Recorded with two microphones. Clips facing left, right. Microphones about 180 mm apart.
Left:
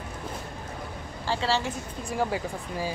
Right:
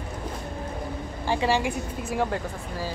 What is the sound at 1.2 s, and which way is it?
Speech, 15° right (ahead or behind).